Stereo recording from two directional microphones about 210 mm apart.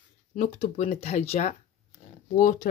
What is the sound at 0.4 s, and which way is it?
Speech, 35° left (ahead or behind).